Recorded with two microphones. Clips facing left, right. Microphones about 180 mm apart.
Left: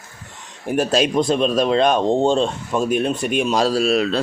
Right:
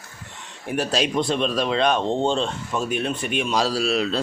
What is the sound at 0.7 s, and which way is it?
Speech, 45° left (ahead or behind).